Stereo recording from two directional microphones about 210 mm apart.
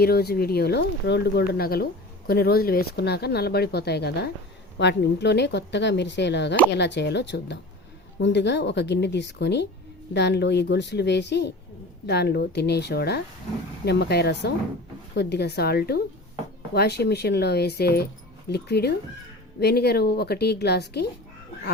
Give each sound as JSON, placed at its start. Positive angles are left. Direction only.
{"t": 0.0, "sound": "speech", "side_deg": 50}